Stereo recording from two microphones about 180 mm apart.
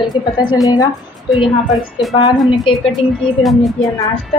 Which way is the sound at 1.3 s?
Centre (ahead or behind).